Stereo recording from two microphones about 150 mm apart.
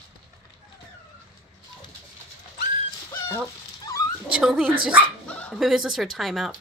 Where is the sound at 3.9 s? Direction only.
25° left (ahead or behind).